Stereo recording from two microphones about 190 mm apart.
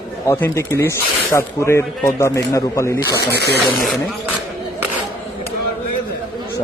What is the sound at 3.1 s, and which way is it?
Speech, 60° left (ahead or behind).